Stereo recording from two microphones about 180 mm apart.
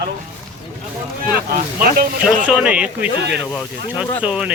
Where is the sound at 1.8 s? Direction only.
55° right (ahead or behind).